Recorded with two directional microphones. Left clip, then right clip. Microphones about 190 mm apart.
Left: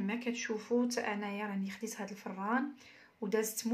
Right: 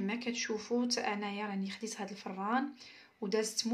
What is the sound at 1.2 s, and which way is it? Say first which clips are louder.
Speech: right 1 dB; 5° right (ahead or behind).